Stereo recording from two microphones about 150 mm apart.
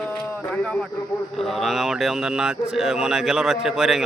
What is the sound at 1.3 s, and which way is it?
Speech, centre (ahead or behind).